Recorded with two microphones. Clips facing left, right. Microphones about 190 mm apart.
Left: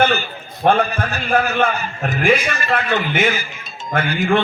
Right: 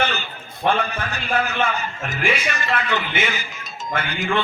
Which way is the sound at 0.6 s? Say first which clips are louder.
Left 5 dB; 50° left (ahead or behind).